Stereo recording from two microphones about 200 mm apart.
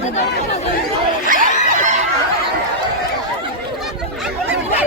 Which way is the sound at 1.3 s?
40° right (ahead or behind).